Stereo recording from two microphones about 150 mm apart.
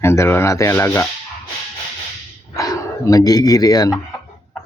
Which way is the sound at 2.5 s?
20° left (ahead or behind).